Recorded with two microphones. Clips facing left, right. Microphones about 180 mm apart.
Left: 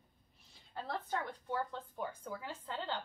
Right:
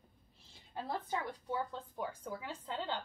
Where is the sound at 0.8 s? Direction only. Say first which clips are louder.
Right 1 dB; 15° right (ahead or behind).